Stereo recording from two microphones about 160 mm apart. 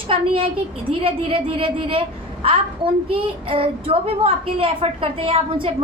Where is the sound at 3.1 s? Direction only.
35° right (ahead or behind).